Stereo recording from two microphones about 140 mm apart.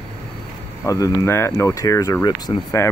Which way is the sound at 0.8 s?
25° left (ahead or behind).